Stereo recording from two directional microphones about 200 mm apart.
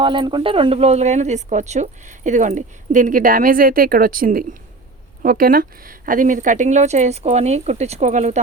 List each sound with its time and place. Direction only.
0.0 s speech: 25° right (ahead or behind)